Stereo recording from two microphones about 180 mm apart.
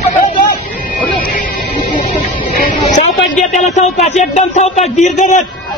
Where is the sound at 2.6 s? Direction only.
45° left (ahead or behind).